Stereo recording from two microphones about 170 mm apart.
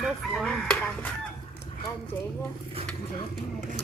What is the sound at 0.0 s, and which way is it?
Chicken, 5° left (ahead or behind).